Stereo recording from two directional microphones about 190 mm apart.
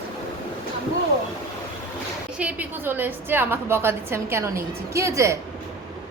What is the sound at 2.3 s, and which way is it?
A woman's voice, 10° right (ahead or behind).